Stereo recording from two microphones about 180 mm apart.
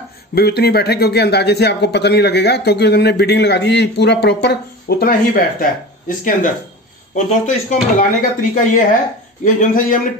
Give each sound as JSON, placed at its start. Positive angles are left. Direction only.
{"t": 0.3, "sound": "speech", "side_deg": 60}